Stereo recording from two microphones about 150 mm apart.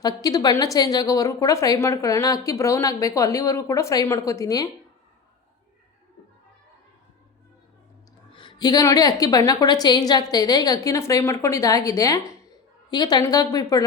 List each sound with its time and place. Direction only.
0.0 s a woman's voice: 25° left (ahead or behind)
8.3 s a woman's voice: 35° left (ahead or behind)